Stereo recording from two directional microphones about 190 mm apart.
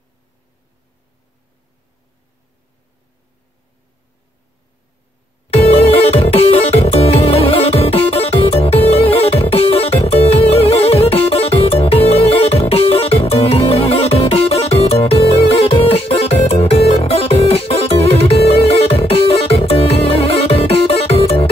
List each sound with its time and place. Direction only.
5.5 s music: 30° left (ahead or behind)